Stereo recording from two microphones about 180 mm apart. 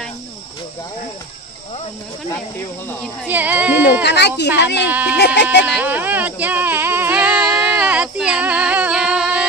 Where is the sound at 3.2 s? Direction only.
10° right (ahead or behind).